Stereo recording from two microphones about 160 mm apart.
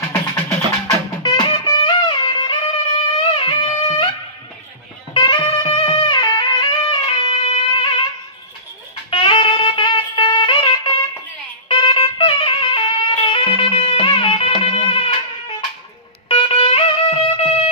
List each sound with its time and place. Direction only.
0.8 s music: 20° left (ahead or behind)
1.5 s music: 30° left (ahead or behind)
5.1 s music: 25° left (ahead or behind)
9.1 s music: 35° left (ahead or behind)
16.3 s music: 35° left (ahead or behind)